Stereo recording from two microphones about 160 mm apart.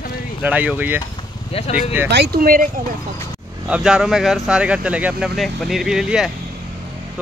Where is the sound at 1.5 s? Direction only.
45° left (ahead or behind).